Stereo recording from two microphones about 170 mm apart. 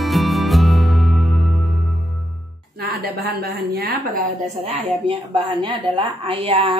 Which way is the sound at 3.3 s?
65° right (ahead or behind).